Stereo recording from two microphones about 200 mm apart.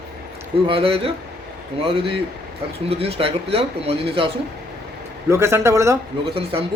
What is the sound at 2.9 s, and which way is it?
Speech, 30° right (ahead or behind).